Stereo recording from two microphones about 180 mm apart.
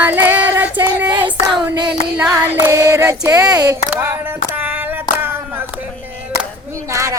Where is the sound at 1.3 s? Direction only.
25° right (ahead or behind).